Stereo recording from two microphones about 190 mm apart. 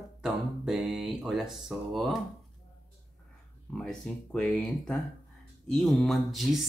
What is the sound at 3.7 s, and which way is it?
Speech, 5° left (ahead or behind).